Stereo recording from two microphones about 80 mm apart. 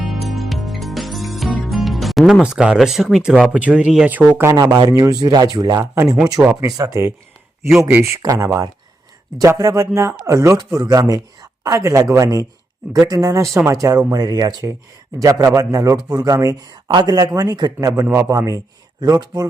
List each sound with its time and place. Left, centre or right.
0.1 s music: centre
2.4 s speech: centre
4.5 s speech: right
6.4 s speech: right
6.7 s speech: right
7.8 s speech: right
16.9 s speech: right
18.0 s speech: right
18.3 s speech: right